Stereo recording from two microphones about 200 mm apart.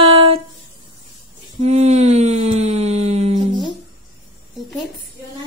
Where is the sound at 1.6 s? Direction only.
30° right (ahead or behind).